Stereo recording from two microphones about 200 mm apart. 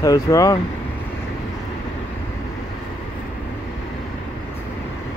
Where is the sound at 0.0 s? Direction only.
15° left (ahead or behind).